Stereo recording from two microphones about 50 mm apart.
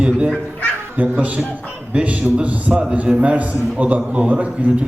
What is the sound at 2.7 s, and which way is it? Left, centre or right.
A man's voice, centre.